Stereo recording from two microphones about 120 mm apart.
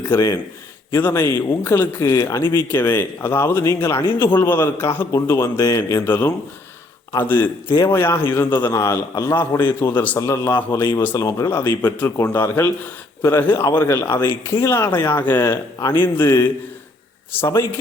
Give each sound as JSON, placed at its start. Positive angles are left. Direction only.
{"t": 0.9, "sound": "a man's voice", "side_deg": 25}
{"t": 6.1, "sound": "a man's voice", "side_deg": 20}
{"t": 8.6, "sound": "a man's voice", "side_deg": 30}
{"t": 10.2, "sound": "a man's voice", "side_deg": 25}
{"t": 11.8, "sound": "a man's voice", "side_deg": 15}